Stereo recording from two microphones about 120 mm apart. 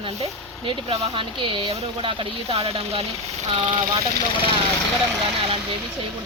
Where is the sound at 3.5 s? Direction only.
45° right (ahead or behind).